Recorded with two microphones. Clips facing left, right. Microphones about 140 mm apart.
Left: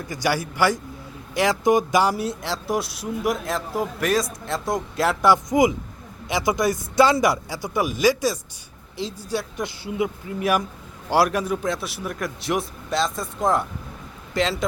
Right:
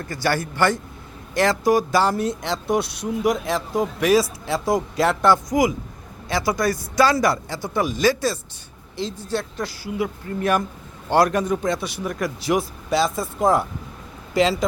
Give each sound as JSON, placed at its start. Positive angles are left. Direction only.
{"t": 0.0, "sound": "speech", "side_deg": 15}
{"t": 5.2, "sound": "a man's voice", "side_deg": 20}
{"t": 9.6, "sound": "a man's voice", "side_deg": 20}
{"t": 10.2, "sound": "speech", "side_deg": 10}